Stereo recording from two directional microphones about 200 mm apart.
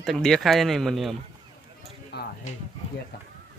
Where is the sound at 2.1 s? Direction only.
55° left (ahead or behind).